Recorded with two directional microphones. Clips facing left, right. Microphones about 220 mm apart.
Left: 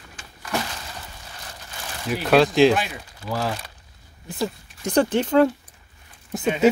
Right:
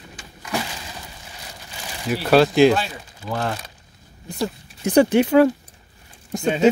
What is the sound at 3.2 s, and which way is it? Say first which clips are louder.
Speech: right 1 dB; 5° left (ahead or behind).